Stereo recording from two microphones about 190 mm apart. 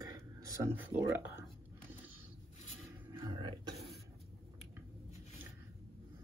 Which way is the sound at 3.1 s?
25° right (ahead or behind).